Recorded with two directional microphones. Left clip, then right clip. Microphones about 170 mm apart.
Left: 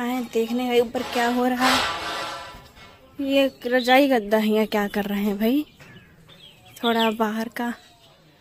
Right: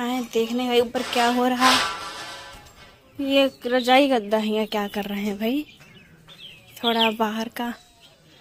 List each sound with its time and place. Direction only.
0.0 s speech: centre (ahead or behind)
3.2 s speech: centre (ahead or behind); by 5.7 s 20° left (ahead or behind)
6.8 s speech: 15° left (ahead or behind)